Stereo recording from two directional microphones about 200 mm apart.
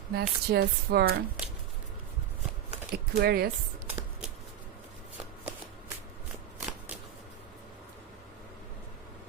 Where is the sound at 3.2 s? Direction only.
50° right (ahead or behind).